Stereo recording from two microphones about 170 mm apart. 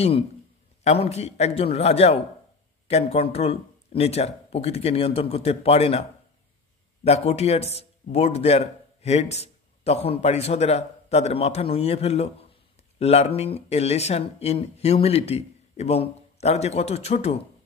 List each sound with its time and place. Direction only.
0.8 s a man's voice: 40° left (ahead or behind)
7.1 s a man's voice: 40° left (ahead or behind)